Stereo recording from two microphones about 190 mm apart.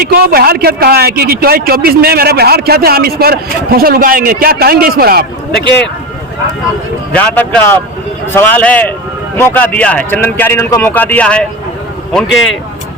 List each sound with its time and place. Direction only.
0.0 s a man's voice: 50° right (ahead or behind)
7.1 s speech: 10° left (ahead or behind)